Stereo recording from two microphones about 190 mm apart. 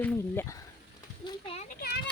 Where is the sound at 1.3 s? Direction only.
30° left (ahead or behind).